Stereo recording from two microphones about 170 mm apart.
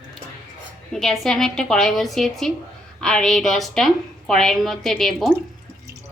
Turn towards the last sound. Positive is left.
turn(degrees=0)  # may be behind; listen again after turning